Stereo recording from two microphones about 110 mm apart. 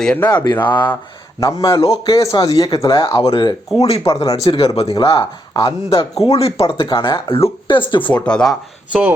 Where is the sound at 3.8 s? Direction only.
70° left (ahead or behind); by 8.1 s 50° left (ahead or behind).